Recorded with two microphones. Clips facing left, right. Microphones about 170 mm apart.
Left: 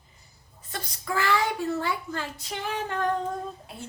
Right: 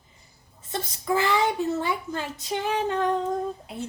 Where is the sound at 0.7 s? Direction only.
20° right (ahead or behind).